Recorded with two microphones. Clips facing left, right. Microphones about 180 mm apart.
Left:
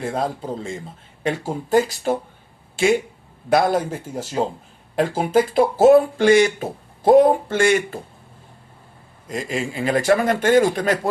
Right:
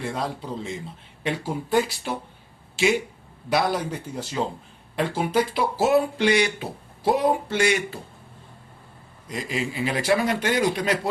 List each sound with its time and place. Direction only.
0.0 s speech: 50° left (ahead or behind)
9.3 s speech: 45° left (ahead or behind)